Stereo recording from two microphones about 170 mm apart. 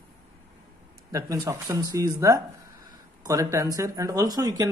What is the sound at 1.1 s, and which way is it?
A man's voice, 20° right (ahead or behind).